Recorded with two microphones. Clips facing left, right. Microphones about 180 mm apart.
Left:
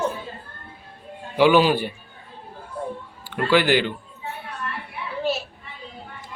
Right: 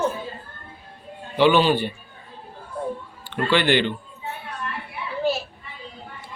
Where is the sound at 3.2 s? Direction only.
10° left (ahead or behind).